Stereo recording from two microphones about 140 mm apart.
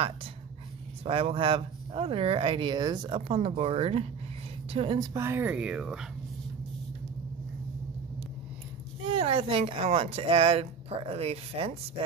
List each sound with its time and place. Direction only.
1.0 s a woman's voice: 40° right (ahead or behind)
4.9 s speech: 25° right (ahead or behind); by 6.0 s 5° right (ahead or behind)
9.1 s speech: 40° right (ahead or behind)